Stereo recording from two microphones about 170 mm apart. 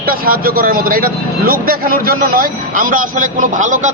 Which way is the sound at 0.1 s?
60° right (ahead or behind).